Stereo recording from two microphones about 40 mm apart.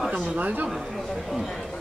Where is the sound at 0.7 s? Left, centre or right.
Centre.